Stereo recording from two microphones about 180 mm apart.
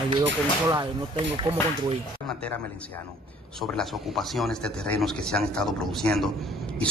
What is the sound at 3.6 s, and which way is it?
A man's voice, centre (ahead or behind).